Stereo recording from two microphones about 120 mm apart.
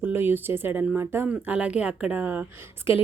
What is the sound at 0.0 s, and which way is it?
Speech, 15° right (ahead or behind).